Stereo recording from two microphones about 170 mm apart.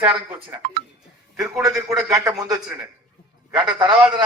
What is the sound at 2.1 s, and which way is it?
Speech, 20° right (ahead or behind).